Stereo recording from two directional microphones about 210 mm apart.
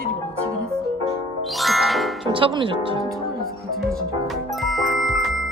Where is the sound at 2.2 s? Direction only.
25° right (ahead or behind).